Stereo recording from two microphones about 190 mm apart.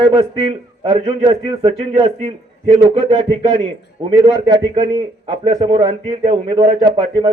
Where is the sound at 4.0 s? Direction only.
25° right (ahead or behind).